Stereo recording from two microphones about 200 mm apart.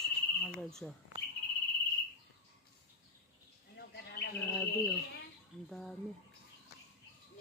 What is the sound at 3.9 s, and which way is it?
Bird, 55° left (ahead or behind).